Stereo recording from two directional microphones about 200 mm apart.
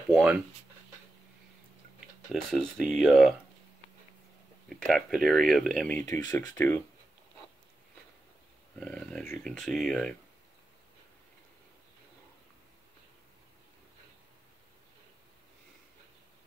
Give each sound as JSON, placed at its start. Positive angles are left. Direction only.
{"t": 0.1, "sound": "speech", "side_deg": -5}
{"t": 2.5, "sound": "speech", "side_deg": 0}
{"t": 4.6, "sound": "speech", "side_deg": 0}
{"t": 6.0, "sound": "speech", "side_deg": 15}
{"t": 8.7, "sound": "speech", "side_deg": 5}